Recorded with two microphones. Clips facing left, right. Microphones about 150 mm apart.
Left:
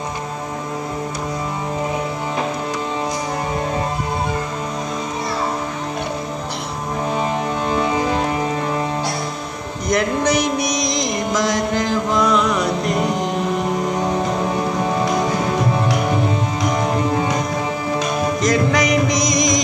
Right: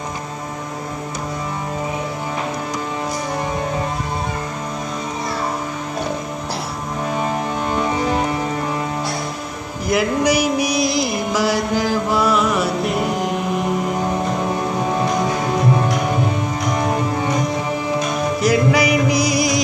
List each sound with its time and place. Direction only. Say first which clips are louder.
9.8 s mantra: right 1 dB; 5° right (ahead or behind)
18.4 s music: right 2 dB; 10° right (ahead or behind)